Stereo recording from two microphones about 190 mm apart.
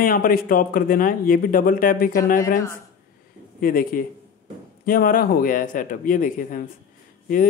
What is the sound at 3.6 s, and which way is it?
Speech, 50° left (ahead or behind).